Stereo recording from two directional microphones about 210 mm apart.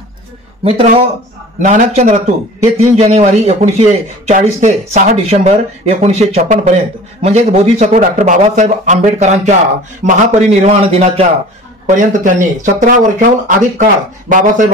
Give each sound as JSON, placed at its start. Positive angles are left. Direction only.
{"t": 0.7, "sound": "a man's voice", "side_deg": -30}